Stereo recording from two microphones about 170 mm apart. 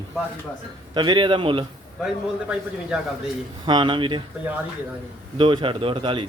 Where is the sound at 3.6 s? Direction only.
30° right (ahead or behind).